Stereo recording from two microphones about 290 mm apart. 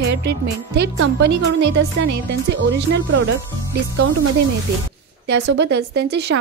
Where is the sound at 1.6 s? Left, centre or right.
Right.